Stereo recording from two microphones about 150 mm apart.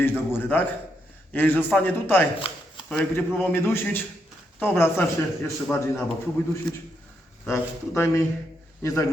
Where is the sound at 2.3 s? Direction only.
35° left (ahead or behind).